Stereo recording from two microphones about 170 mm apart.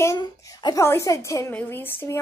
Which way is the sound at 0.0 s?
20° left (ahead or behind).